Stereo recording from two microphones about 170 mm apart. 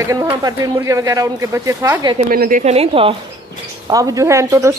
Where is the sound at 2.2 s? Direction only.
60° right (ahead or behind).